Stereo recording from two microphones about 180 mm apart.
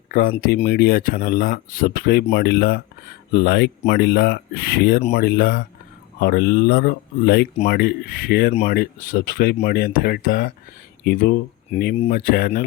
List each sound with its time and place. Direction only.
0.1 s speech: 55° left (ahead or behind)
0.6 s speech: 65° left (ahead or behind)
2.3 s speech: 65° left (ahead or behind)